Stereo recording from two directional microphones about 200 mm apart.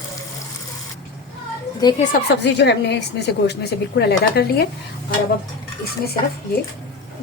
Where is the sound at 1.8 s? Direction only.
20° left (ahead or behind).